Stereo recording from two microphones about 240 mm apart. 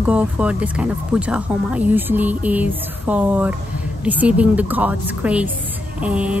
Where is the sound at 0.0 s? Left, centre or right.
Centre.